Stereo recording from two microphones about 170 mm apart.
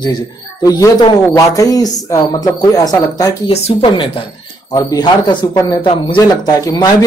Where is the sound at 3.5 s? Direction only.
35° left (ahead or behind).